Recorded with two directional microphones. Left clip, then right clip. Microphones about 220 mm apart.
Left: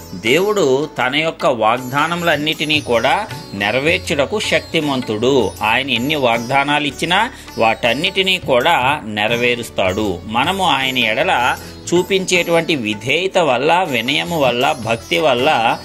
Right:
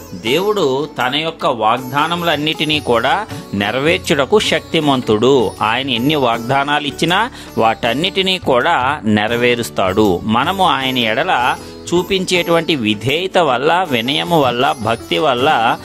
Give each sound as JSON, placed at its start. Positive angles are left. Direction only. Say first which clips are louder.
{"t": 0.2, "sound": "speech", "louder": "left 1 dB", "side_deg": 0}
{"t": 2.4, "sound": "speech", "louder": "right 1 dB", "side_deg": -25}
{"t": 11.2, "sound": "speech", "louder": "right 1 dB", "side_deg": -10}
{"t": 12.3, "sound": "speech", "louder": "right 1 dB", "side_deg": -25}